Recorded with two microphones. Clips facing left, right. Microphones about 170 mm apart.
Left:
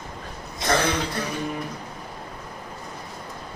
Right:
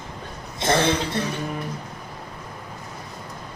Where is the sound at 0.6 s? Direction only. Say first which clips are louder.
Right 2 dB; 25° right (ahead or behind).